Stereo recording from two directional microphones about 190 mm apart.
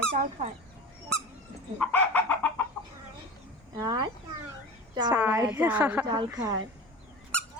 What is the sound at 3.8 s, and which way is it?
Speech, 20° right (ahead or behind).